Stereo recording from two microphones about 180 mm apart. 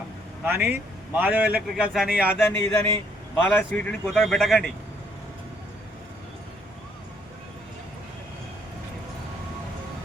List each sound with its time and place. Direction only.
0.4 s a man's voice: 10° right (ahead or behind)